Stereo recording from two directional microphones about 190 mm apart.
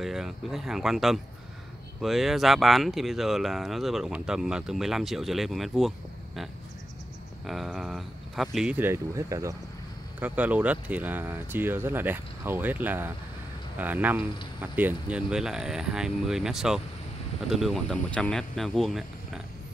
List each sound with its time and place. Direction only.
0.0 s speech: centre (ahead or behind)